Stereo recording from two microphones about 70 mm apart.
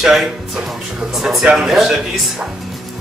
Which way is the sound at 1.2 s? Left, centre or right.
Centre.